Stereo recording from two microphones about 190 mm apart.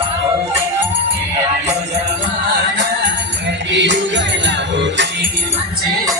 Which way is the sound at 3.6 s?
70° right (ahead or behind).